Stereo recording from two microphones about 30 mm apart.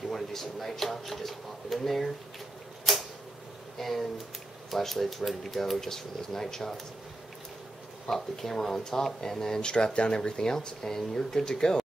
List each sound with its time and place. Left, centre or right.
0.1 s speech: centre
2.8 s a sound: centre
3.8 s speech: centre
8.4 s speech: centre
9.6 s speech: left